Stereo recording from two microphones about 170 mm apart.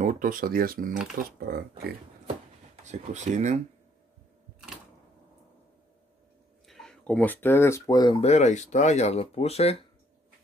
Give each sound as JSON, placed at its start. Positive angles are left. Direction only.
{"t": 0.0, "sound": "speech", "side_deg": -50}
{"t": 2.2, "sound": "a sound", "side_deg": -40}
{"t": 6.7, "sound": "speech", "side_deg": 5}
{"t": 8.2, "sound": "speech", "side_deg": 40}